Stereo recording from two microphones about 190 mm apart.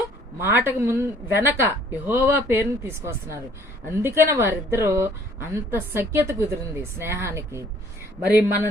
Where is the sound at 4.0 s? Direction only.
15° right (ahead or behind).